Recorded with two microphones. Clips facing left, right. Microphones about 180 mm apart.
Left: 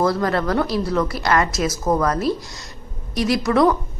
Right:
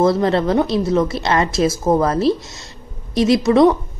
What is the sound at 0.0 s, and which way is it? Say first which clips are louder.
A woman's voice: right 4 dB; 25° right (ahead or behind).